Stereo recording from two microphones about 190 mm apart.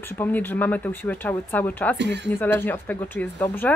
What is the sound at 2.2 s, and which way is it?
Speech, 10° left (ahead or behind).